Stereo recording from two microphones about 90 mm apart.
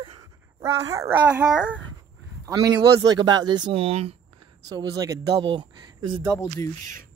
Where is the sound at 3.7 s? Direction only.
90° right.